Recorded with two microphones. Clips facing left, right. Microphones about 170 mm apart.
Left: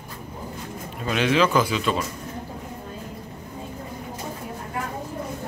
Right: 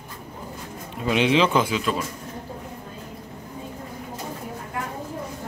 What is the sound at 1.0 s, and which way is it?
Speech, 20° right (ahead or behind).